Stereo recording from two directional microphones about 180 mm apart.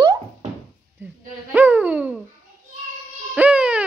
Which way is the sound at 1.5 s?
10° right (ahead or behind).